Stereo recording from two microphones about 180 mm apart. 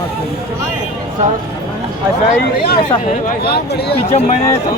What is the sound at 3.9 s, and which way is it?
Speech, 35° left (ahead or behind).